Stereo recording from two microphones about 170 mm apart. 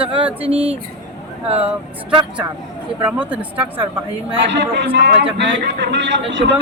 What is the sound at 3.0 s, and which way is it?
Speech, 10° right (ahead or behind).